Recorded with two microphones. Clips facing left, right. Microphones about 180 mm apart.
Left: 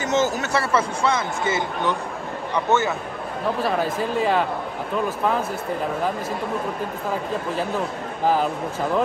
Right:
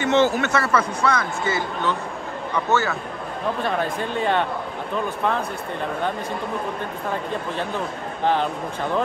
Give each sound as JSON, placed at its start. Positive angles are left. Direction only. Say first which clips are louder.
{"t": 0.0, "sound": "speech", "louder": "right 3 dB", "side_deg": 40}
{"t": 3.6, "sound": "speech", "louder": "left 2 dB", "side_deg": 5}